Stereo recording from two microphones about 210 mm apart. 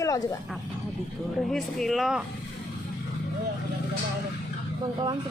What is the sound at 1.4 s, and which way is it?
Speech, centre (ahead or behind).